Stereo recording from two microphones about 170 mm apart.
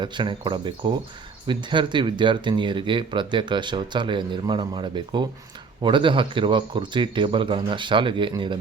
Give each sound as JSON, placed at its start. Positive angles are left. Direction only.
{"t": 0.0, "sound": "speech", "side_deg": -25}